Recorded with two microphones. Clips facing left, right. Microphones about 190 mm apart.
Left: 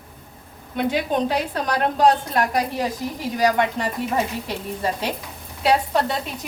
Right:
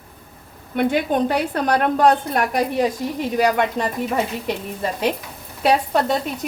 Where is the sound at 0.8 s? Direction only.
55° right (ahead or behind).